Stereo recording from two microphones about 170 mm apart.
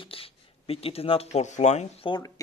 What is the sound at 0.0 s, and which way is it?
Speech, 35° left (ahead or behind).